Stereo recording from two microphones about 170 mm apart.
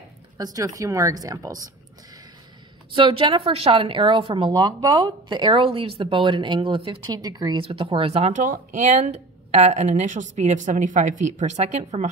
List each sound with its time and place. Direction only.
0.4 s a woman's voice: 20° right (ahead or behind)
2.9 s speech: 30° right (ahead or behind)